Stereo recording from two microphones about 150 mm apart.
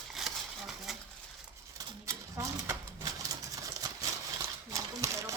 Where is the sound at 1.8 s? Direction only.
20° right (ahead or behind).